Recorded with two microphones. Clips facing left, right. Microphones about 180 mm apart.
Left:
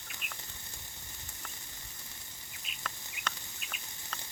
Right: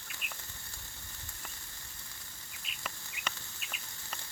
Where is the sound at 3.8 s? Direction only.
20° left (ahead or behind).